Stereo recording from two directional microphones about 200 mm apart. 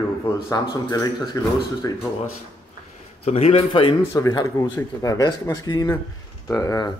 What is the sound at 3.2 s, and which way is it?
Speech, 30° left (ahead or behind).